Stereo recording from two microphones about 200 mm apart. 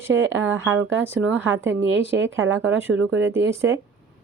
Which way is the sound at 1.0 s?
10° right (ahead or behind).